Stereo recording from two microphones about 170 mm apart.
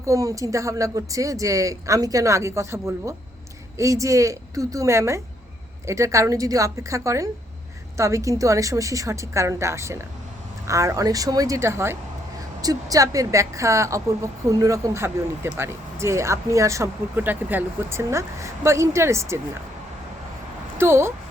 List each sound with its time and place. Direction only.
0.0 s speech: 20° right (ahead or behind)
20.7 s speech: 15° right (ahead or behind)